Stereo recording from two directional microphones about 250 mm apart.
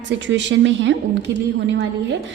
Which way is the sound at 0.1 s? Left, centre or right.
Right.